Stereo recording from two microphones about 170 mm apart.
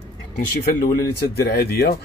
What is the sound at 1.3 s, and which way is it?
Speech, 70° left (ahead or behind).